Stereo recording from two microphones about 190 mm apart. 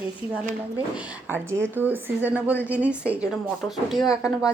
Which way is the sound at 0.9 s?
10° right (ahead or behind).